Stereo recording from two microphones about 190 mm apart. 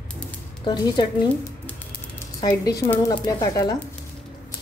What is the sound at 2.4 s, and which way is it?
A woman's voice, 20° left (ahead or behind).